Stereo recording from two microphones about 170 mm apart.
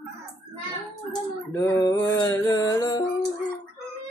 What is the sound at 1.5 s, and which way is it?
Music, 15° left (ahead or behind).